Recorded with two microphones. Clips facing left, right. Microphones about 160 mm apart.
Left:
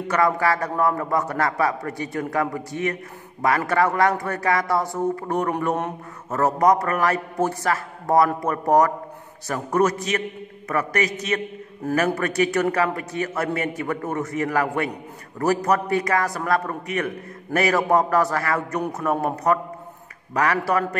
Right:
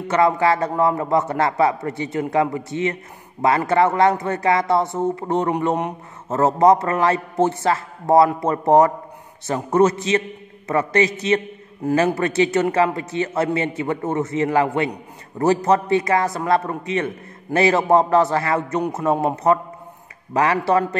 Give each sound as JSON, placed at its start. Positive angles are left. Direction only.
{"t": 0.1, "sound": "a man's voice", "side_deg": -25}